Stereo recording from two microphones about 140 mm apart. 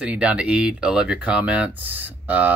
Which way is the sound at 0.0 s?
10° right (ahead or behind).